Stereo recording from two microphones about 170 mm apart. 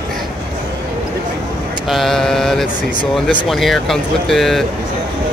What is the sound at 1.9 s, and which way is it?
Speech, centre (ahead or behind).